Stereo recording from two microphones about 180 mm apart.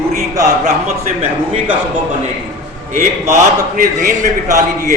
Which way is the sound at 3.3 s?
45° right (ahead or behind).